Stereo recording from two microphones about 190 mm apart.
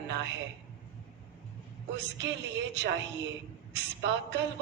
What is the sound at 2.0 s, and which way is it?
A woman's voice, 70° right (ahead or behind).